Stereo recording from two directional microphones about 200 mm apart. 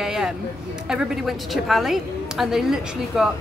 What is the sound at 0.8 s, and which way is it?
A woman's voice, centre (ahead or behind).